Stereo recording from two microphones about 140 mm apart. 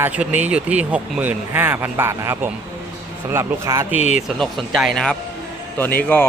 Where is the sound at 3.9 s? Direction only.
50° left (ahead or behind).